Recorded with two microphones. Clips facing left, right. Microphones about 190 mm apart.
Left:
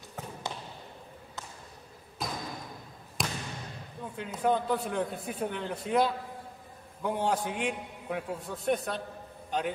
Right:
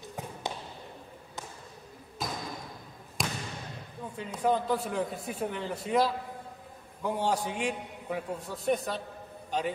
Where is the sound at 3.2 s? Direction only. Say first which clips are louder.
Even; centre (ahead or behind).